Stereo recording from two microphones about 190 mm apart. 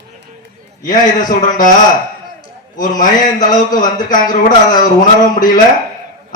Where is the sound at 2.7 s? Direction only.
45° left (ahead or behind).